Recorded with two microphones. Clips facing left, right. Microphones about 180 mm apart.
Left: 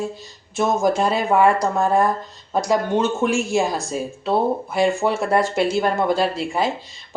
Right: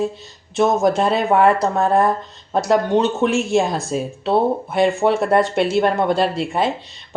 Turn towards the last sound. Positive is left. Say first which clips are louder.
# right 2 dB
turn(degrees=0)  # may be behind; listen again after turning